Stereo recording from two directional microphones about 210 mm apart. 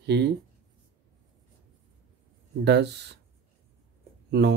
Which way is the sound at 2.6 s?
50° right (ahead or behind).